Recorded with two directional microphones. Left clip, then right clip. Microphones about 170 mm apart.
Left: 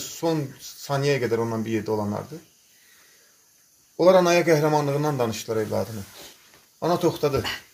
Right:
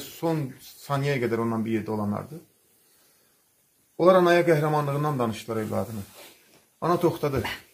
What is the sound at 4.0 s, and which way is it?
A man's voice, 55° left (ahead or behind).